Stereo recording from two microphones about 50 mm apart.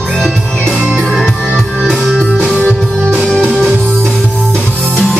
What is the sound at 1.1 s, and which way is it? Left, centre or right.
Music, centre.